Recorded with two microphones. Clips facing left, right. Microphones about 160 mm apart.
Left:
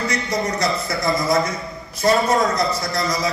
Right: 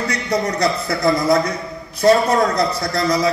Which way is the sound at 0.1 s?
65° right (ahead or behind).